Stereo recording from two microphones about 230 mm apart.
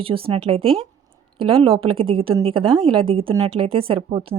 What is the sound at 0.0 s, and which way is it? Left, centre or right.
A woman's voice, right.